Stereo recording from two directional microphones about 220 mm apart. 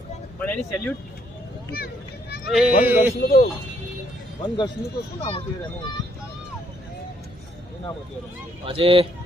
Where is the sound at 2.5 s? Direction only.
5° right (ahead or behind).